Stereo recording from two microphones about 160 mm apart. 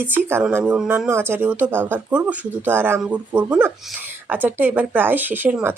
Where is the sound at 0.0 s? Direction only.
10° right (ahead or behind).